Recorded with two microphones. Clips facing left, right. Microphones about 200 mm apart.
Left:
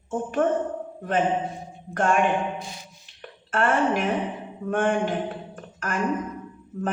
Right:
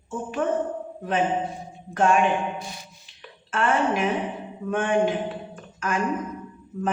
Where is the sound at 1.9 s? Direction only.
50° left (ahead or behind).